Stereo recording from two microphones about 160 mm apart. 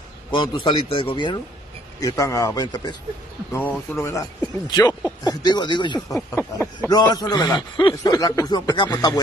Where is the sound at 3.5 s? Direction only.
15° left (ahead or behind).